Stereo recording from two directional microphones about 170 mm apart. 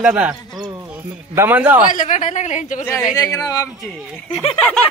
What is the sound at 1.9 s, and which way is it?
Speech, 50° left (ahead or behind).